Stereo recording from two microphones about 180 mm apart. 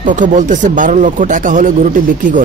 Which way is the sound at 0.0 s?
45° right (ahead or behind).